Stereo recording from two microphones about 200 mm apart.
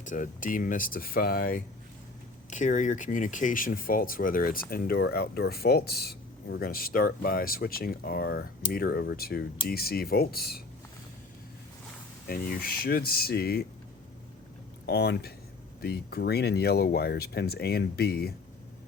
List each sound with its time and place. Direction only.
0.0 s speech: 40° left (ahead or behind)
12.3 s speech: 50° left (ahead or behind)
14.8 s speech: 55° left (ahead or behind)